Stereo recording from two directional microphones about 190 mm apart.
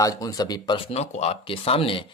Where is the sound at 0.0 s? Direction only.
15° left (ahead or behind).